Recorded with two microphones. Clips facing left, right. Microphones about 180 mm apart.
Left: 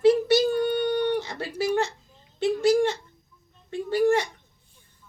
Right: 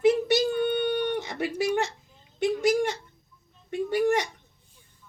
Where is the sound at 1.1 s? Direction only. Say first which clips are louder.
Even; 20° right (ahead or behind).